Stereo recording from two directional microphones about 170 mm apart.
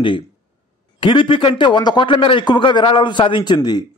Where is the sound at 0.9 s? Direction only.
30° left (ahead or behind).